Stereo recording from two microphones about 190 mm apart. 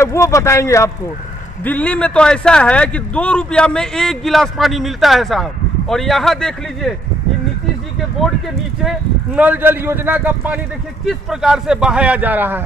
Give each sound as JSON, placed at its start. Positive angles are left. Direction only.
{"t": 0.0, "sound": "speech", "side_deg": 15}
{"t": 8.2, "sound": "speech", "side_deg": 0}